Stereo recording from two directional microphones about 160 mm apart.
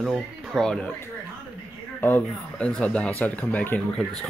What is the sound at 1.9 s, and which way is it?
Speech, 10° left (ahead or behind).